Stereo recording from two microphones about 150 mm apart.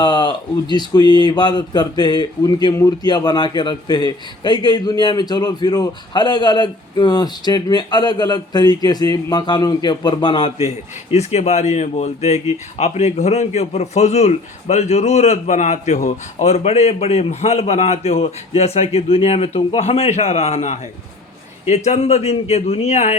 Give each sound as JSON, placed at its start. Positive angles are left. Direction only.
{"t": 0.0, "sound": "speech", "side_deg": 30}
{"t": 11.1, "sound": "a man's voice", "side_deg": 45}
{"t": 21.8, "sound": "a man's voice", "side_deg": 45}